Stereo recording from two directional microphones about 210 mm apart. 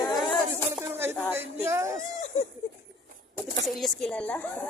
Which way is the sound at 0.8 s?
10° right (ahead or behind).